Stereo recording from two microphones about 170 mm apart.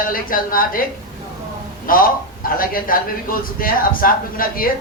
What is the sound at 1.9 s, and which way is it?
A man's voice, 55° left (ahead or behind).